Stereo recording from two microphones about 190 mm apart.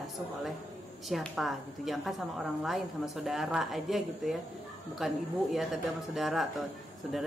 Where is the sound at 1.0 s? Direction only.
Centre (ahead or behind).